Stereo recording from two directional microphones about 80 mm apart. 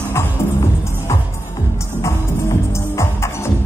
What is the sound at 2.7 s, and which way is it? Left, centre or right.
Music, left.